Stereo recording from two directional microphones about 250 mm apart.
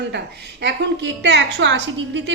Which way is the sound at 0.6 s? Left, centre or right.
Right.